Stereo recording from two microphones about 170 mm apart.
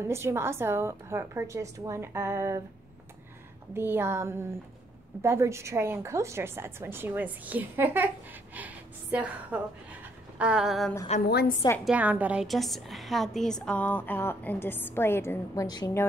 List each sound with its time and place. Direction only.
0.0 s a woman's voice: 15° right (ahead or behind)
3.7 s a woman's voice: 15° right (ahead or behind)
11.2 s a woman's voice: 70° left (ahead or behind)
11.8 s a woman's voice: 10° right (ahead or behind); by 16.1 s 20° left (ahead or behind)